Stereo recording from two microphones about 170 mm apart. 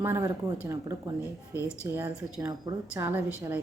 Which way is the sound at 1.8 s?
10° right (ahead or behind).